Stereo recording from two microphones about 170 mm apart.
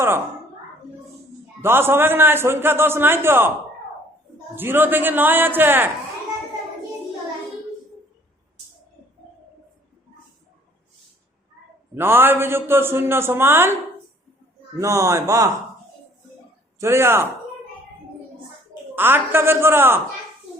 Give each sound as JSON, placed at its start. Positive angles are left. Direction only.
{"t": 1.6, "sound": "a man's voice", "side_deg": -15}
{"t": 4.5, "sound": "a man's voice", "side_deg": -10}
{"t": 11.9, "sound": "a man's voice", "side_deg": -10}
{"t": 14.8, "sound": "a man's voice", "side_deg": -15}
{"t": 16.7, "sound": "a man's voice", "side_deg": -15}
{"t": 18.9, "sound": "a man's voice", "side_deg": -10}